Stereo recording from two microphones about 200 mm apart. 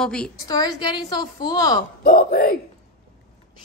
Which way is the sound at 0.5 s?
20° left (ahead or behind).